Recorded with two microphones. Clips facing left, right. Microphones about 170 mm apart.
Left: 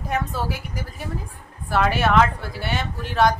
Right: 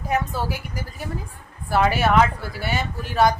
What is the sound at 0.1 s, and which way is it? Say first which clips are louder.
Speech: right 2 dB; centre (ahead or behind).